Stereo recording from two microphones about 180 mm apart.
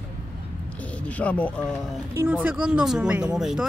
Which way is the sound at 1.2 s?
5° left (ahead or behind).